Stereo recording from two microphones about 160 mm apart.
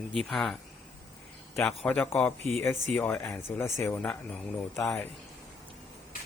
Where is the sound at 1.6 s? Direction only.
10° left (ahead or behind).